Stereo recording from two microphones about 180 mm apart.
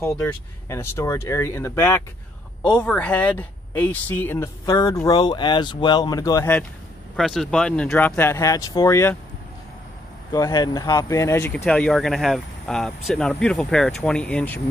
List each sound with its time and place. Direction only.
0.0 s speech: 15° left (ahead or behind)
7.2 s speech: centre (ahead or behind); by 9.1 s 15° left (ahead or behind)
10.3 s speech: 20° left (ahead or behind)